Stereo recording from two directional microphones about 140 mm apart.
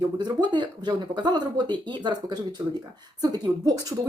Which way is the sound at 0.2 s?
30° right (ahead or behind).